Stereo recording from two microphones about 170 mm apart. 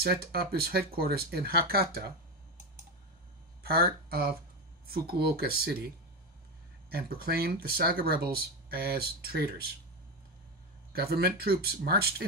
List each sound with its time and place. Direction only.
0.0 s speech: 65° right (ahead or behind)
3.6 s speech: 65° right (ahead or behind)
6.9 s speech: 65° right (ahead or behind)
10.9 s speech: 65° right (ahead or behind)